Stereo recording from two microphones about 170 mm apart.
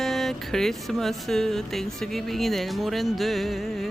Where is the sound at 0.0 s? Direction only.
Centre (ahead or behind).